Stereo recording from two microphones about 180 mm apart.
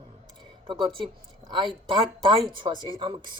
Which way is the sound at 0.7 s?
25° right (ahead or behind).